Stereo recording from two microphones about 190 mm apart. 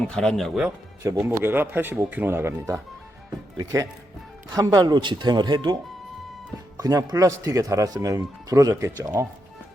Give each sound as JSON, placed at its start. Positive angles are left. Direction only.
{"t": 0.2, "sound": "speech", "side_deg": 0}
{"t": 1.1, "sound": "speech", "side_deg": -10}